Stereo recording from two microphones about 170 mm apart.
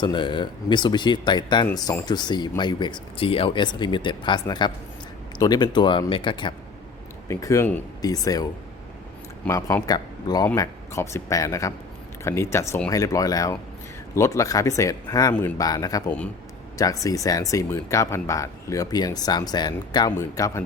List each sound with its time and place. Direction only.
0.0 s speech: 30° left (ahead or behind)
9.5 s speech: 15° left (ahead or behind)